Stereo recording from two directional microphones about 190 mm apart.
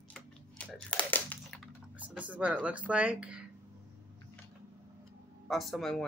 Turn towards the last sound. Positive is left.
turn(degrees=0)  # may be behind; listen again after turning